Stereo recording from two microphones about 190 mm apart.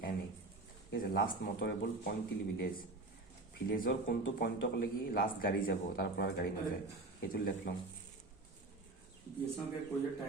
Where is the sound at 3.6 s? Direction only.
50° left (ahead or behind).